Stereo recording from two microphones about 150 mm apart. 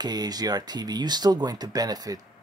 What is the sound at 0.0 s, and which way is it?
Speech, 25° right (ahead or behind).